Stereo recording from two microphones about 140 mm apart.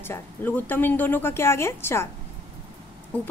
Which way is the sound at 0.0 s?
15° left (ahead or behind).